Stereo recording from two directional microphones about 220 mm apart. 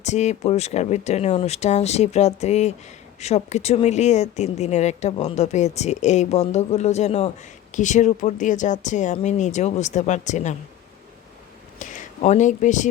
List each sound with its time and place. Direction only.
0.0 s speech: 30° left (ahead or behind)
11.8 s speech: 35° left (ahead or behind)